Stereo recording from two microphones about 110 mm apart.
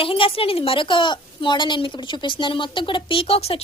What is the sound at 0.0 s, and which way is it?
A woman's voice, 55° left (ahead or behind).